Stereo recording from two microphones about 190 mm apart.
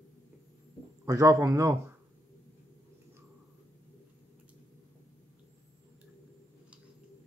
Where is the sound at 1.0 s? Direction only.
15° right (ahead or behind).